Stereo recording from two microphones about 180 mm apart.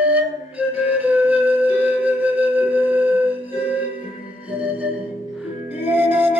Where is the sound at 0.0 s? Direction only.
10° right (ahead or behind).